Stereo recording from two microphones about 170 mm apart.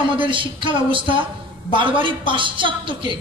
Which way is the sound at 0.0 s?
30° right (ahead or behind).